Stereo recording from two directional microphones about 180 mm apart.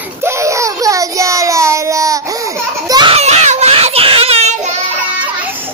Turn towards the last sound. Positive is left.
turn(degrees=-40)  # may be behind; listen again after turning